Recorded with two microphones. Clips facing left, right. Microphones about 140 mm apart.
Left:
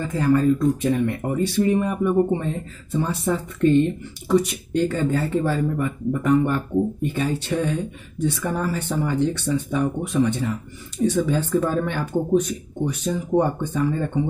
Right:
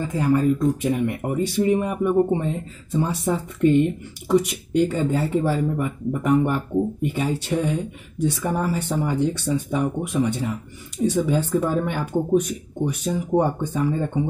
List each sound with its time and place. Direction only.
0.0 s speech: 15° right (ahead or behind)